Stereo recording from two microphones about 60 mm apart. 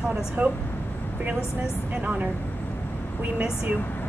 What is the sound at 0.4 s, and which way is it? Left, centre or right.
Speech, right.